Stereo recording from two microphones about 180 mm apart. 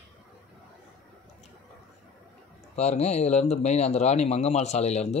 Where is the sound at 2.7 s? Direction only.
40° left (ahead or behind).